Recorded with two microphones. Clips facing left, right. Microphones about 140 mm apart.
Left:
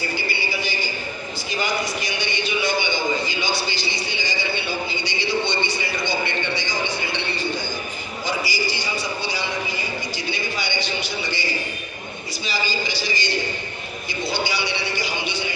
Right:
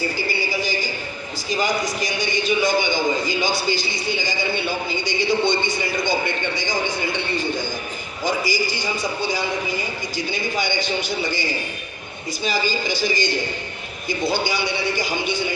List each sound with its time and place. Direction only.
0.3 s a sound: 40° right (ahead or behind)
1.5 s a man's voice: 40° right (ahead or behind)
12.5 s a man's voice: 50° right (ahead or behind)